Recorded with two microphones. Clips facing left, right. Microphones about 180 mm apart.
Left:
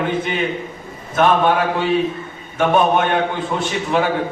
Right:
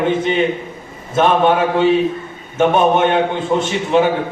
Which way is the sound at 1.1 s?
25° right (ahead or behind).